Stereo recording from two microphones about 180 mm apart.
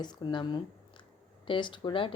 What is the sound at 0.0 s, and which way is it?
Speech, 25° left (ahead or behind).